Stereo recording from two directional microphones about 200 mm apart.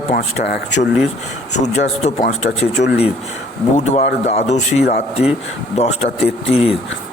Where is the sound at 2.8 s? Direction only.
60° left (ahead or behind).